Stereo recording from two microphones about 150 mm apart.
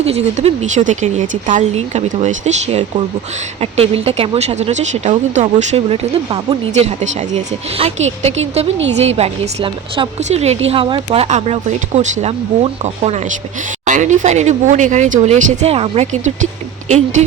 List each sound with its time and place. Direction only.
0.0 s speech: 45° right (ahead or behind)
10.2 s speech: 50° right (ahead or behind)